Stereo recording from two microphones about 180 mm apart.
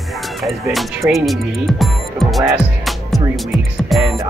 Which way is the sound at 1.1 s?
Centre (ahead or behind).